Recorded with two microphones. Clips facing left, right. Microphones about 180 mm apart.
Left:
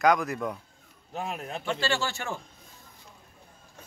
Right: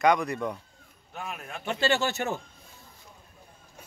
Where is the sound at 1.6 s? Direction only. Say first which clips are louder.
Right 4 dB; 20° right (ahead or behind).